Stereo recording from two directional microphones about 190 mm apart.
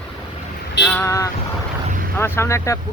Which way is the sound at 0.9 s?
15° left (ahead or behind).